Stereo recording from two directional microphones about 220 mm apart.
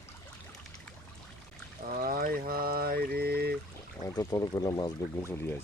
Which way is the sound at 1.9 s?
40° right (ahead or behind).